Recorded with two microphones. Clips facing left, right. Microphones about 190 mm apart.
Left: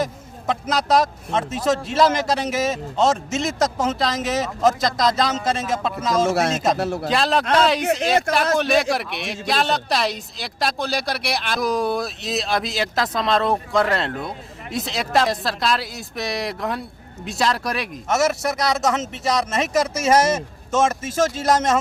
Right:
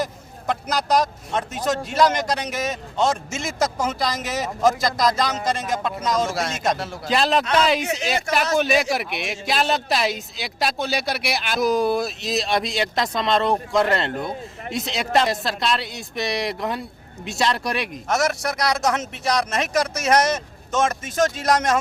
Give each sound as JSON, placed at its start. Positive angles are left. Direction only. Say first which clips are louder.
{"t": 0.0, "sound": "speech", "louder": "left 2 dB", "side_deg": 0}
{"t": 6.7, "sound": "a man's voice", "louder": "left 8 dB", "side_deg": 65}
{"t": 7.1, "sound": "speech", "louder": "right 1 dB", "side_deg": 0}